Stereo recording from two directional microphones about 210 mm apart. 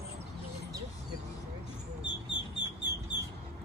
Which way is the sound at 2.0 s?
55° left (ahead or behind).